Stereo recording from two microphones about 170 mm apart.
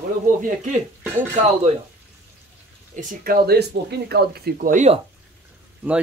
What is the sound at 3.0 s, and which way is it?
Speech, 55° right (ahead or behind).